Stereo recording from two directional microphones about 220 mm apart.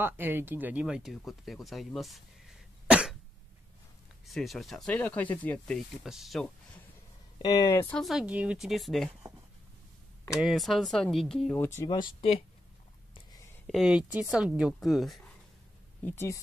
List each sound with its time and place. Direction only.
0.0 s speech: 10° right (ahead or behind)
2.9 s cough: 5° right (ahead or behind)
4.3 s speech: centre (ahead or behind)
7.4 s speech: 15° left (ahead or behind); by 9.1 s centre (ahead or behind)
10.4 s speech: centre (ahead or behind)
11.8 s speech: 20° left (ahead or behind)
13.7 s speech: centre (ahead or behind)